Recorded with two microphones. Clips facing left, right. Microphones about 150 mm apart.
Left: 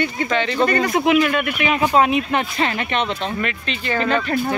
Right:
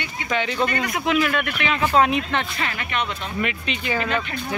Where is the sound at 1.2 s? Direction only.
5° left (ahead or behind).